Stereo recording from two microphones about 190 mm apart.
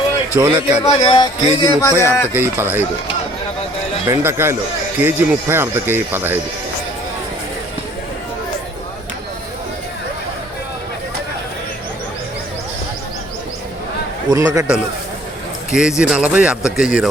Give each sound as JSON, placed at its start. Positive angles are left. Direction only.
{"t": 0.3, "sound": "speech", "side_deg": -15}
{"t": 0.9, "sound": "speech", "side_deg": 25}
{"t": 1.9, "sound": "speech", "side_deg": -15}
{"t": 4.1, "sound": "speech", "side_deg": -10}
{"t": 14.3, "sound": "speech", "side_deg": -20}
{"t": 15.7, "sound": "a man's voice", "side_deg": -5}